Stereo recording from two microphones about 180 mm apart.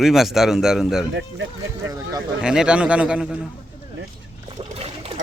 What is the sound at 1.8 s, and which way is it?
Speech, 20° right (ahead or behind).